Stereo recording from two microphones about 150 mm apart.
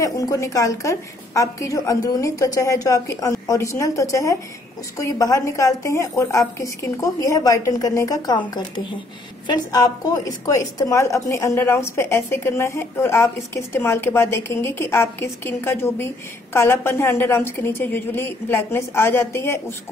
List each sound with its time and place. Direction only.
0.0 s a woman's voice: 20° left (ahead or behind)